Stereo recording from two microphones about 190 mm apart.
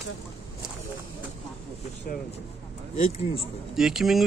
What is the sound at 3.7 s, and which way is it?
Speech, centre (ahead or behind).